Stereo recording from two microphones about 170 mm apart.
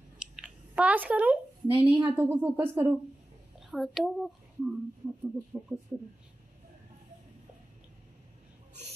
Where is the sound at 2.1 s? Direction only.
15° right (ahead or behind).